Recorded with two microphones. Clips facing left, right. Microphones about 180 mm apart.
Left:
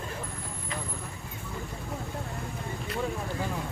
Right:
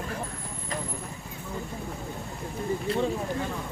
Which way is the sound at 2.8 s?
25° right (ahead or behind).